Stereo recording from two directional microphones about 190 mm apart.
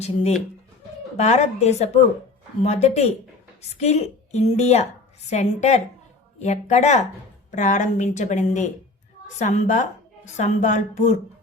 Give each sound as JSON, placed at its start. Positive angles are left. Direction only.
{"t": 0.0, "sound": "a woman's voice", "side_deg": 35}